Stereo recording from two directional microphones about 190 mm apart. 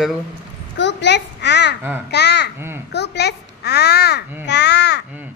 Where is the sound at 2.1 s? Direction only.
60° left (ahead or behind).